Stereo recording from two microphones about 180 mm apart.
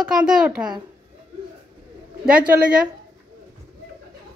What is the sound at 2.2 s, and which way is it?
Speech, 5° right (ahead or behind).